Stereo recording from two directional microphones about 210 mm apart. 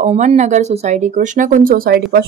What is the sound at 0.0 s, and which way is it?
Speech, 30° right (ahead or behind).